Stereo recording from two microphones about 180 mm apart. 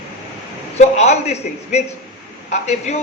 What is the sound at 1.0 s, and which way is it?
A man's voice, 35° left (ahead or behind).